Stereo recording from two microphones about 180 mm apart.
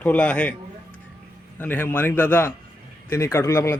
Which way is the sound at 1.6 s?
10° left (ahead or behind).